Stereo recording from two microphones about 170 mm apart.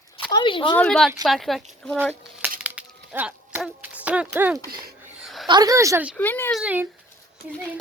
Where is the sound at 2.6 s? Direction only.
10° right (ahead or behind).